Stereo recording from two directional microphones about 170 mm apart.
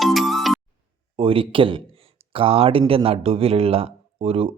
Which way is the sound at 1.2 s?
30° right (ahead or behind).